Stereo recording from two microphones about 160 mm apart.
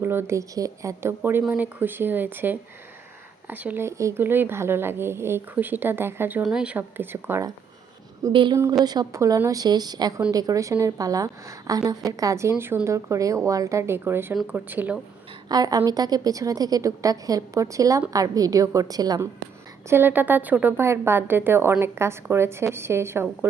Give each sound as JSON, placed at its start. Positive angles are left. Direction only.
{"t": 0.0, "sound": "a woman's voice", "side_deg": -15}
{"t": 8.3, "sound": "a woman's voice", "side_deg": -30}
{"t": 15.4, "sound": "a woman's voice", "side_deg": -25}
{"t": 19.9, "sound": "a woman's voice", "side_deg": -10}